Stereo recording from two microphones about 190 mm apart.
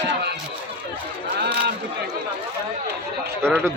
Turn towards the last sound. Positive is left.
turn(degrees=-15)  # may be behind; listen again after turning